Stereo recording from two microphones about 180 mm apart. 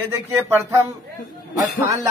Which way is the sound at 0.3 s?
15° right (ahead or behind).